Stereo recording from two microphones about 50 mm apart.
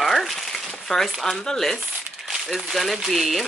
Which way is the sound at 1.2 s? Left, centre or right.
Centre.